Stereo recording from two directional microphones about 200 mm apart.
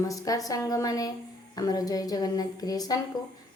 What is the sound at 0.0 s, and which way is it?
A woman's voice, 15° left (ahead or behind).